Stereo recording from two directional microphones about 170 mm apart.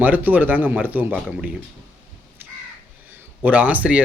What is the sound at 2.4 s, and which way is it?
Crow, 10° right (ahead or behind).